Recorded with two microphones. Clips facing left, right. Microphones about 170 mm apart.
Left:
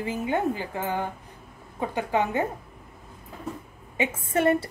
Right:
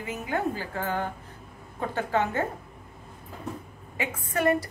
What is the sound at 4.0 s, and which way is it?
Speech, 25° left (ahead or behind).